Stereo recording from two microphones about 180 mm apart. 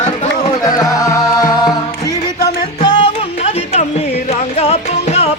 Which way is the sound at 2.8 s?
25° left (ahead or behind).